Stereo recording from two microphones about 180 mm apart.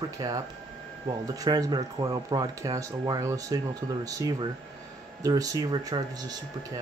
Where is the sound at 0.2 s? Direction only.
20° right (ahead or behind).